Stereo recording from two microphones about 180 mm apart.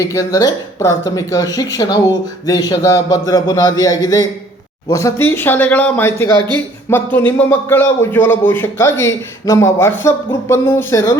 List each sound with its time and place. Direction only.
0.0 s a man's voice: 20° left (ahead or behind)